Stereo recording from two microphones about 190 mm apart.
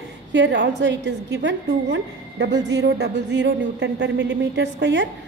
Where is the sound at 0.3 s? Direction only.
70° right (ahead or behind).